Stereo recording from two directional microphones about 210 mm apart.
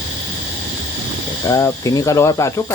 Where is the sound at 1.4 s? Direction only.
15° left (ahead or behind).